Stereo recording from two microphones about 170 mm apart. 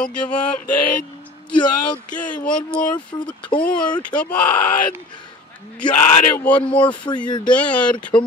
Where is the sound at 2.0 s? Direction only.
50° left (ahead or behind).